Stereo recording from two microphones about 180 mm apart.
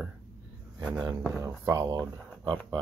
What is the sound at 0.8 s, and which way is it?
Speech, centre (ahead or behind).